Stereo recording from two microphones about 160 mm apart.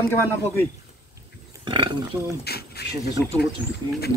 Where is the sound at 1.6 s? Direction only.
30° right (ahead or behind).